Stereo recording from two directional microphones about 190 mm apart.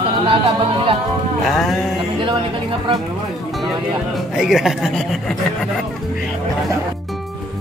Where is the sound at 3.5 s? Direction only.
Centre (ahead or behind).